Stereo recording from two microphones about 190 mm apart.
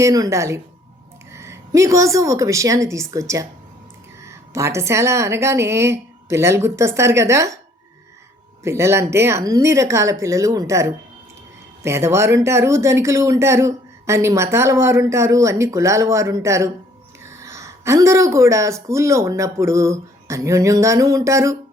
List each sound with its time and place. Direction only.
0.0 s a woman's voice: 15° right (ahead or behind)
8.6 s speech: 15° right (ahead or behind)